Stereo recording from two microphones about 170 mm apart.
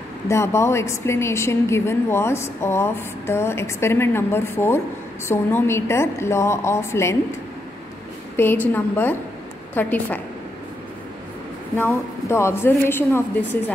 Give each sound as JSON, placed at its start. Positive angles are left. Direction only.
{"t": 0.3, "sound": "a woman's voice", "side_deg": 15}
{"t": 8.4, "sound": "a woman's voice", "side_deg": 10}
{"t": 11.7, "sound": "a woman's voice", "side_deg": 15}